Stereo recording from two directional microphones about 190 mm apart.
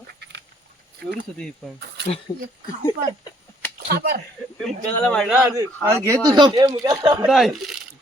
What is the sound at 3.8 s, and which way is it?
Speech, 55° right (ahead or behind).